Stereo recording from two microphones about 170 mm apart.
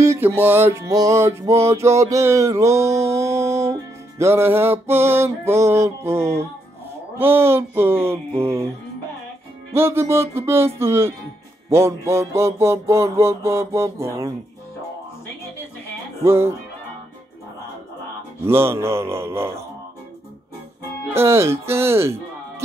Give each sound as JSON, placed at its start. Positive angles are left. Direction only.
{"t": 0.0, "sound": "music", "side_deg": -15}
{"t": 9.8, "sound": "music", "side_deg": -15}
{"t": 16.3, "sound": "music", "side_deg": -15}
{"t": 18.4, "sound": "music", "side_deg": -15}
{"t": 21.1, "sound": "music", "side_deg": -15}